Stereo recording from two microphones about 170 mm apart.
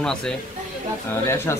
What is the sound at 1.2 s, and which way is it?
Speech, 15° left (ahead or behind).